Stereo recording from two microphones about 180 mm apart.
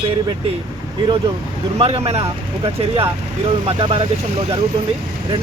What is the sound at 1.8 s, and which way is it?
Speech, 35° right (ahead or behind).